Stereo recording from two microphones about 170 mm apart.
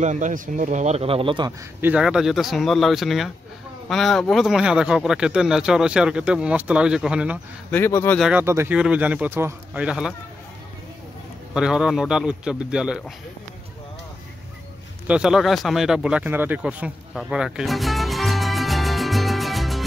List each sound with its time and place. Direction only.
0.0 s speech: 45° right (ahead or behind); by 1.5 s 30° right (ahead or behind)
1.8 s speech: 10° right (ahead or behind)
7.7 s speech: 15° left (ahead or behind)
8.2 s speech: 10° right (ahead or behind)
11.5 s speech: 5° right (ahead or behind)
15.0 s speech: 5° right (ahead or behind)